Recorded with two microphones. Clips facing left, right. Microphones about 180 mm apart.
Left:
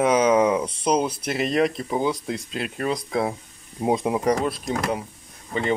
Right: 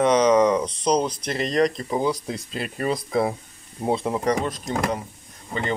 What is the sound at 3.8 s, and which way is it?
Speech, 15° left (ahead or behind).